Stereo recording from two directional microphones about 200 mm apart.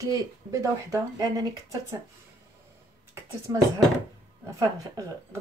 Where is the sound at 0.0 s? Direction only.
15° right (ahead or behind).